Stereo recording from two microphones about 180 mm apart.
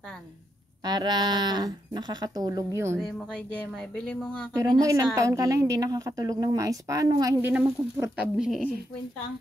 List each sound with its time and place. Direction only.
0.8 s a woman's voice: 25° right (ahead or behind)
3.3 s speech: 5° left (ahead or behind)
4.6 s a woman's voice: 20° right (ahead or behind)
7.5 s speech: 5° right (ahead or behind)